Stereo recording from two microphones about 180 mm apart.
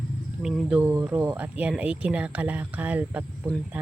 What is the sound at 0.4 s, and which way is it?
A man's voice, 5° right (ahead or behind).